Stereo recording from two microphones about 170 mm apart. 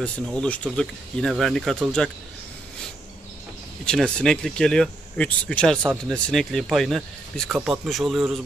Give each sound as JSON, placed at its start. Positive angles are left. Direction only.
{"t": 0.0, "sound": "speech", "side_deg": 5}
{"t": 3.8, "sound": "speech", "side_deg": 5}